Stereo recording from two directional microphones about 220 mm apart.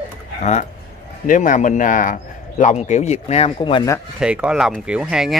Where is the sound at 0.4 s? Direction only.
30° left (ahead or behind).